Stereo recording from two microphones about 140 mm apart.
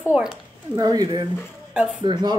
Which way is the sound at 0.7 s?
30° right (ahead or behind).